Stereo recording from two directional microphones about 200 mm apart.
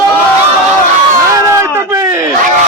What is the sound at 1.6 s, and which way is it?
Speech, 15° right (ahead or behind).